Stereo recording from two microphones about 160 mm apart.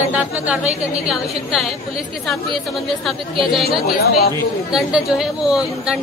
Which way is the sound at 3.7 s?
70° left (ahead or behind).